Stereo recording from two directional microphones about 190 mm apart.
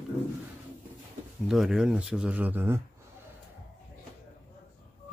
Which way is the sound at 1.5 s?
Centre (ahead or behind).